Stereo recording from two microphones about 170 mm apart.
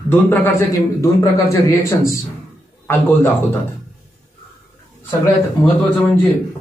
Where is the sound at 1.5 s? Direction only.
20° left (ahead or behind).